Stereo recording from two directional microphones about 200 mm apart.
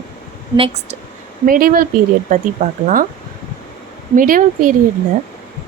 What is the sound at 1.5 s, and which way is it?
Speech, 45° right (ahead or behind).